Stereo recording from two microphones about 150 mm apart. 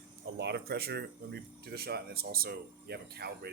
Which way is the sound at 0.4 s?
90° right.